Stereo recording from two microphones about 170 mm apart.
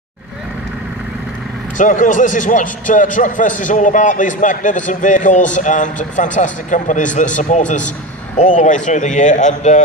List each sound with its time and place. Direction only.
1.8 s a man's voice: 50° left (ahead or behind)